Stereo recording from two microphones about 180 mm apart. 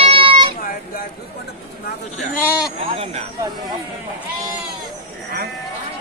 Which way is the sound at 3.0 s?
35° right (ahead or behind).